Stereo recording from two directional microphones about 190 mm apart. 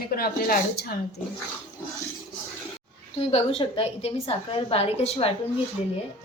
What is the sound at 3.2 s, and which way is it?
A woman's voice, 30° left (ahead or behind).